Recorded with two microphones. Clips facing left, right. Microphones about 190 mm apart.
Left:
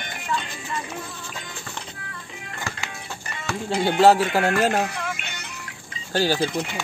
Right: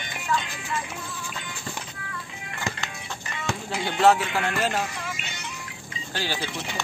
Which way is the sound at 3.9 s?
35° left (ahead or behind).